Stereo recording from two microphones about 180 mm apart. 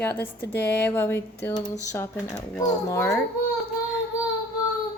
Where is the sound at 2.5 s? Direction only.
15° left (ahead or behind).